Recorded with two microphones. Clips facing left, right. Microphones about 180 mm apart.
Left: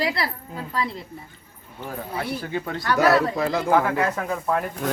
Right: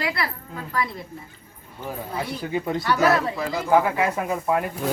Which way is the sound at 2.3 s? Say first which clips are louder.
Right 3 dB; 15° right (ahead or behind).